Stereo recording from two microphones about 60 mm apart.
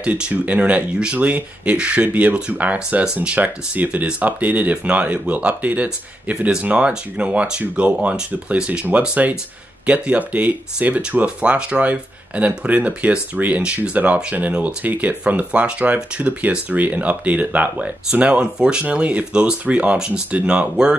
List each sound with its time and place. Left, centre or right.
0.0 s speech: right